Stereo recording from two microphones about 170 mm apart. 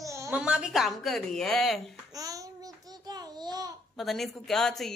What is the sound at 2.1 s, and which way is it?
Babbling, 20° right (ahead or behind).